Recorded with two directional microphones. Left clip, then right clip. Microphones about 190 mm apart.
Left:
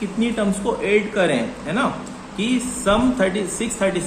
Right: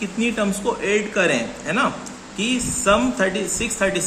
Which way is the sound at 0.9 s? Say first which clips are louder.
Left 1 dB; 15° right (ahead or behind).